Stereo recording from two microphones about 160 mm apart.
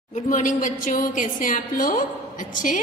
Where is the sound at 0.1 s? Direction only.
55° left (ahead or behind).